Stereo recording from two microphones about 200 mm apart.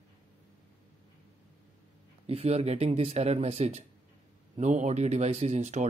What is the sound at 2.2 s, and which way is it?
Speech, 30° right (ahead or behind).